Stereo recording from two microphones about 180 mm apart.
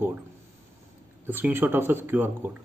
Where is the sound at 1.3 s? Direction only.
10° right (ahead or behind).